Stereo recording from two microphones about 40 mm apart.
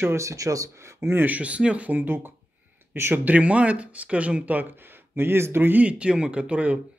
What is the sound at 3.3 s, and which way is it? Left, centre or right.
Speech, right.